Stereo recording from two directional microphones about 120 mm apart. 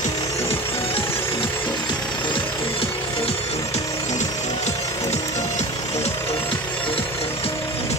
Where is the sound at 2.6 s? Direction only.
50° left (ahead or behind).